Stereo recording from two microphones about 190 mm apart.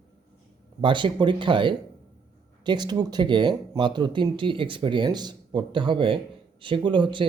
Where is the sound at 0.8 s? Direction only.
25° right (ahead or behind).